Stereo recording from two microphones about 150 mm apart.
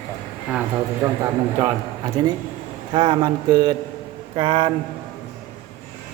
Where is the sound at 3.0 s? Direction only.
30° right (ahead or behind).